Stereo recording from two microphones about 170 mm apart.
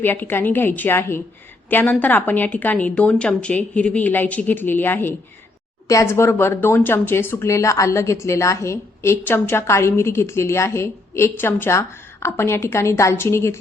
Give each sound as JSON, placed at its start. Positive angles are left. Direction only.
{"t": 0.0, "sound": "speech", "side_deg": 10}